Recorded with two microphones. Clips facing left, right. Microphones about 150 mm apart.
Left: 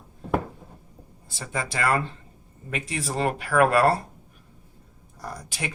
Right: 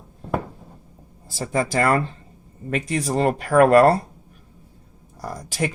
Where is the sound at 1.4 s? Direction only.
40° right (ahead or behind).